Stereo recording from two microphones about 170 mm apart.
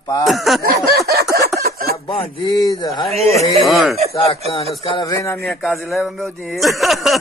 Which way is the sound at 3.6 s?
Centre (ahead or behind).